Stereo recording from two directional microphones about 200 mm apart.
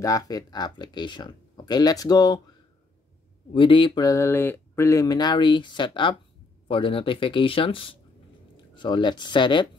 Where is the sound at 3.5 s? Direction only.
25° left (ahead or behind).